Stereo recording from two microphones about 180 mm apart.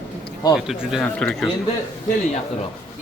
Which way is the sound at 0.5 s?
5° right (ahead or behind).